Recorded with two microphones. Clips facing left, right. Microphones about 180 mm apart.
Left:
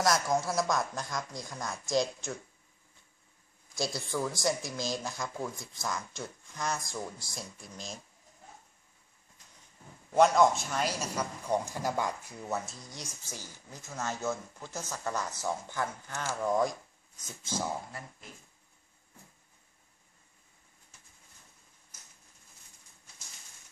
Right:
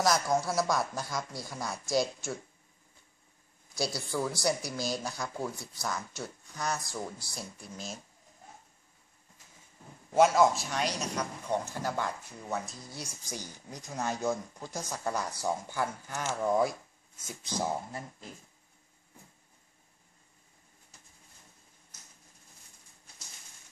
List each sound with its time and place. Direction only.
0.0 s speech: centre (ahead or behind)
3.7 s speech: centre (ahead or behind)
10.1 s a man's voice: 5° right (ahead or behind)